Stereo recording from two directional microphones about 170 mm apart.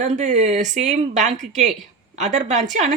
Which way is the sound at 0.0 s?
45° right (ahead or behind).